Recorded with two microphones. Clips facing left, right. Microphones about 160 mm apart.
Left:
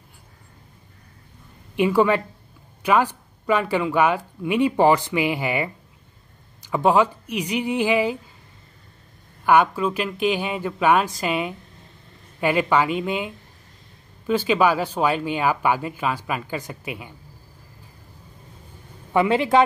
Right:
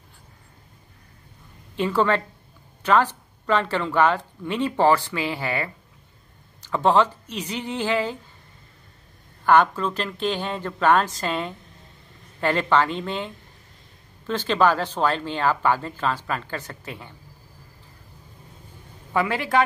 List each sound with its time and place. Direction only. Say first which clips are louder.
1.8 s speech: left 3 dB; 10° left (ahead or behind)
9.4 s speech: left 1 dB; 10° left (ahead or behind)
19.1 s speech: left 4 dB; 20° left (ahead or behind)